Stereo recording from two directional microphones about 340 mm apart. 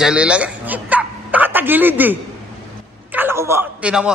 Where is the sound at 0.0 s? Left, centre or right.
Centre.